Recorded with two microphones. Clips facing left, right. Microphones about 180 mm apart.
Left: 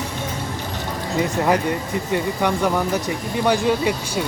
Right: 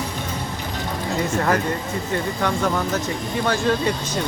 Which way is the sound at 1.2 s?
15° left (ahead or behind).